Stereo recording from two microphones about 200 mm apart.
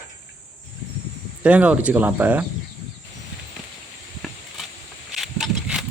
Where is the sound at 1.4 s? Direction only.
5° right (ahead or behind).